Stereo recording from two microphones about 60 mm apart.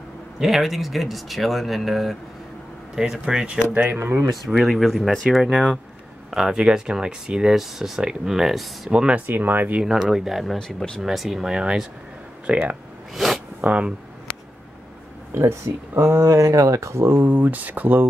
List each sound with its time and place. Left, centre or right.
0.4 s speech: centre
3.0 s speech: centre
3.9 s speech: right
4.3 s speech: centre
8.9 s speech: centre
9.2 s speech: right
9.8 s speech: centre
12.5 s speech: right
13.1 s speech: centre
13.6 s speech: right
15.4 s speech: right